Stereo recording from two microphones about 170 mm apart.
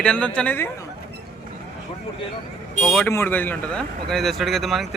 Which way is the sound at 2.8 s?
5° left (ahead or behind).